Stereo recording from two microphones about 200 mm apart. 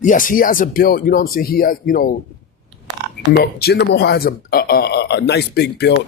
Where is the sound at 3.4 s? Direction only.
50° left (ahead or behind).